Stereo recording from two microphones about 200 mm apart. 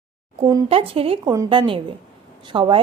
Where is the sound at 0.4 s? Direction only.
25° right (ahead or behind).